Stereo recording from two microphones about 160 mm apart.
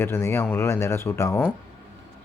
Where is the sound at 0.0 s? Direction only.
15° left (ahead or behind).